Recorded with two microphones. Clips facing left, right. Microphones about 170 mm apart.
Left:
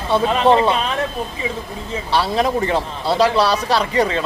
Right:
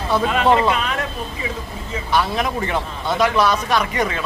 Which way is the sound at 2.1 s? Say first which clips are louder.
Left 2 dB; 30° left (ahead or behind).